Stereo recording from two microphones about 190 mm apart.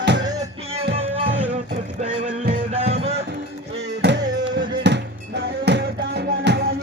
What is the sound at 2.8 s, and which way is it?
Music, 30° right (ahead or behind).